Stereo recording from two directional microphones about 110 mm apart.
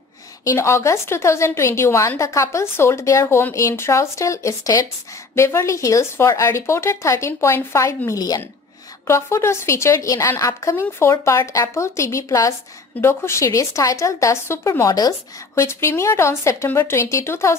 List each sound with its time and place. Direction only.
0.5 s speech: 25° left (ahead or behind)